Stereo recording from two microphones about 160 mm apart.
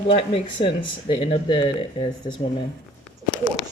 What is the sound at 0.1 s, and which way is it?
Speech, 35° left (ahead or behind).